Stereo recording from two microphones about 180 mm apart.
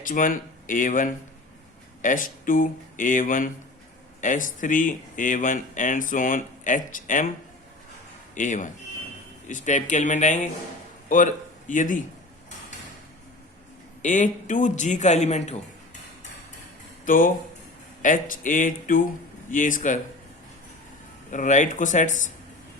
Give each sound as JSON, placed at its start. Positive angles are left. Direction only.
{"t": 0.0, "sound": "speech", "side_deg": 50}
{"t": 8.4, "sound": "a man's voice", "side_deg": 45}
{"t": 14.0, "sound": "speech", "side_deg": 45}
{"t": 17.1, "sound": "speech", "side_deg": 50}
{"t": 21.2, "sound": "speech", "side_deg": 45}